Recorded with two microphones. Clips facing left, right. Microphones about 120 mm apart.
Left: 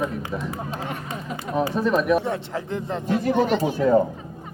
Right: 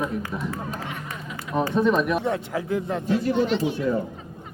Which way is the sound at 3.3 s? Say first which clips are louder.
Left 2 dB; 45° left (ahead or behind).